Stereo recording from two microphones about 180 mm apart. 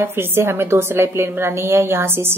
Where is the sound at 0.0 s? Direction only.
15° right (ahead or behind).